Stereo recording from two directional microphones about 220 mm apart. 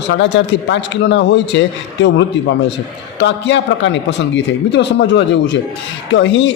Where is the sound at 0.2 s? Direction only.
55° left (ahead or behind).